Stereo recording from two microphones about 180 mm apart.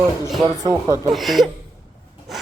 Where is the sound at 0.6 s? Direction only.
25° right (ahead or behind).